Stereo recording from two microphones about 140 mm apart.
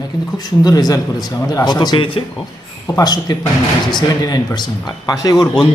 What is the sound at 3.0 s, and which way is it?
A man's voice, 25° left (ahead or behind).